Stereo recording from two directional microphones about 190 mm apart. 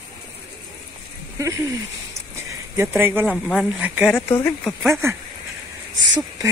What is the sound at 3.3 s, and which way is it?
Speech, centre (ahead or behind).